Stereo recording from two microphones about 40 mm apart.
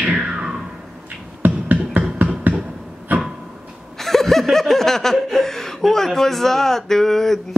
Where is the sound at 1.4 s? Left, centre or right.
Right.